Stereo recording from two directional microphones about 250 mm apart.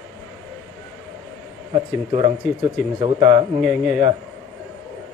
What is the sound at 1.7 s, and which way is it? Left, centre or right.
A man's voice, centre.